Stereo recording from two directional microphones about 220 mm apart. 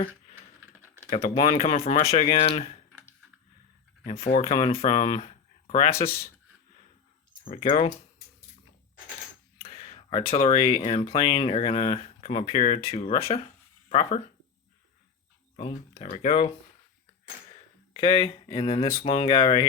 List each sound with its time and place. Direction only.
1.1 s speech: 25° left (ahead or behind)
4.0 s speech: 25° left (ahead or behind)
7.4 s speech: 25° left (ahead or behind)
9.6 s speech: 20° left (ahead or behind)
15.5 s speech: 30° left (ahead or behind)
17.9 s speech: 25° left (ahead or behind)